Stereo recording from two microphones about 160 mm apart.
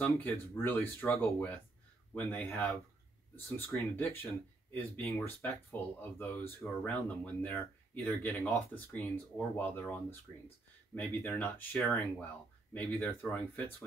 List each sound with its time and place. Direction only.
0.0 s speech: 15° left (ahead or behind)